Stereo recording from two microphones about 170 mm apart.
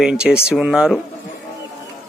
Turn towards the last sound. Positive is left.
turn(degrees=-5)  # may be behind; listen again after turning